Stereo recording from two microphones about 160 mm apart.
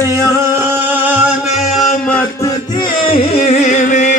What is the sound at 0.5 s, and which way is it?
Music, 15° right (ahead or behind).